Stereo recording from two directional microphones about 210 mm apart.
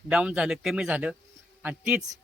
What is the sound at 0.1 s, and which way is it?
Speech, 5° right (ahead or behind).